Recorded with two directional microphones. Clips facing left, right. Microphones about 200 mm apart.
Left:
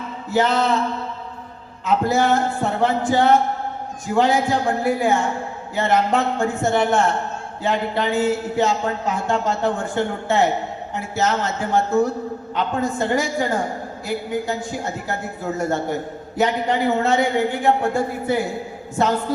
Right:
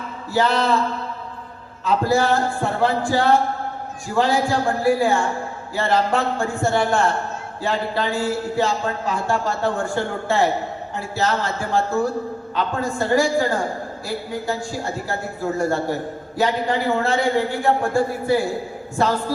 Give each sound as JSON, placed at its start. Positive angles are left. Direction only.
{"t": 0.3, "sound": "speech", "side_deg": 20}
{"t": 1.8, "sound": "speech", "side_deg": 20}